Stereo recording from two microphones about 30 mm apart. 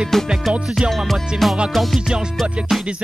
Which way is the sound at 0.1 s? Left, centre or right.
Centre.